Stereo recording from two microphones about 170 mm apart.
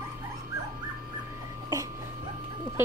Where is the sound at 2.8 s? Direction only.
15° right (ahead or behind).